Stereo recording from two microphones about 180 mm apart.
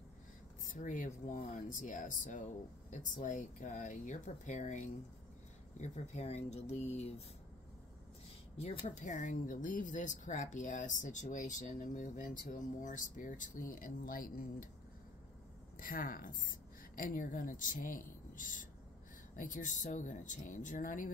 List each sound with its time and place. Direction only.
0.7 s speech: 45° left (ahead or behind)
8.5 s speech: 40° left (ahead or behind)
15.8 s a woman's voice: 50° left (ahead or behind)